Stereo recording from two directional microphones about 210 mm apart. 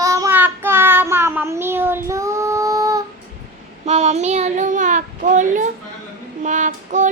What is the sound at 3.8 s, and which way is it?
Child singing, 30° right (ahead or behind).